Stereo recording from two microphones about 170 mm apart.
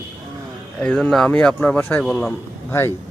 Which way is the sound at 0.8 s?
5° left (ahead or behind).